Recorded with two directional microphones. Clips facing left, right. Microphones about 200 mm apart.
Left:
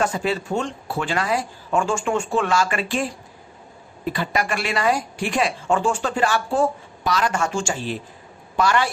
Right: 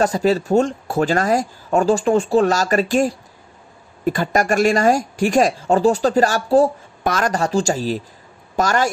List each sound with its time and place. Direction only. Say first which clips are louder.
0.0 s speech: right 6 dB; 40° right (ahead or behind)
7.0 s speech: right 3 dB; 50° right (ahead or behind)